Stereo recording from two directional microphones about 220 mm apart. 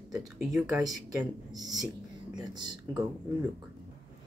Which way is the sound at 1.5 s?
15° right (ahead or behind).